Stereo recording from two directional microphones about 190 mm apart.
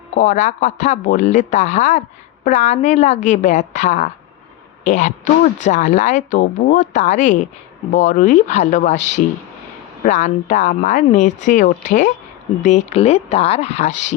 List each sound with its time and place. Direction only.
0.2 s speech: 40° left (ahead or behind)